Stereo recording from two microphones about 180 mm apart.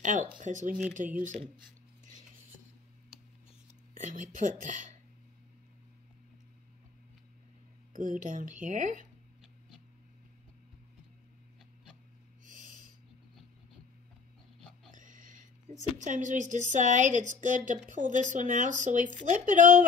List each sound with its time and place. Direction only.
0.0 s speech: 45° right (ahead or behind)
3.9 s speech: 45° right (ahead or behind)
7.9 s speech: 45° right (ahead or behind)
12.4 s a sound: 45° right (ahead or behind)
14.9 s speech: 45° right (ahead or behind)